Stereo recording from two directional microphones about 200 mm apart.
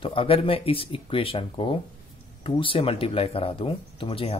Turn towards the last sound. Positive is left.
turn(degrees=30)  # may be behind; listen again after turning